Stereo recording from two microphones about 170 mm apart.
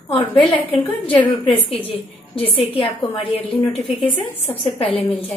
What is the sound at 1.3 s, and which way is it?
A woman's voice, 35° left (ahead or behind).